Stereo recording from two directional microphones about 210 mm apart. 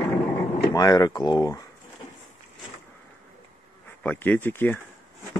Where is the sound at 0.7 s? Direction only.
20° left (ahead or behind).